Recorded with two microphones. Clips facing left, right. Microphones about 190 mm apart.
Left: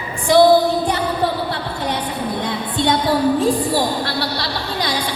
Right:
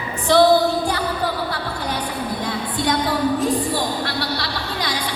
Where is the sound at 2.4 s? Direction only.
25° left (ahead or behind).